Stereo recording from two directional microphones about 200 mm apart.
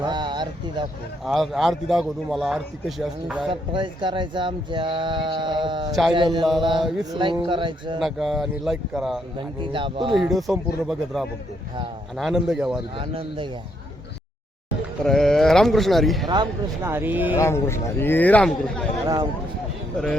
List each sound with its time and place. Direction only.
0.0 s speech: 20° right (ahead or behind)
1.2 s a man's voice: centre (ahead or behind)
3.5 s speech: 25° right (ahead or behind)
5.9 s a man's voice: centre (ahead or behind)
6.1 s speech: 25° right (ahead or behind)
8.0 s a man's voice: centre (ahead or behind)
9.4 s speech: 25° right (ahead or behind)
10.2 s a man's voice: centre (ahead or behind)
13.0 s speech: 25° right (ahead or behind)
15.0 s a man's voice: centre (ahead or behind)
16.3 s speech: 15° right (ahead or behind)
17.3 s speech: 15° left (ahead or behind)
19.0 s speech: 20° right (ahead or behind)